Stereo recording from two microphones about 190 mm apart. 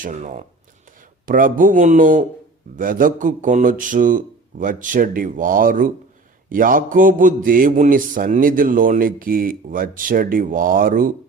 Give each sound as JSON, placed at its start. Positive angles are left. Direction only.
{"t": 0.0, "sound": "speech", "side_deg": -40}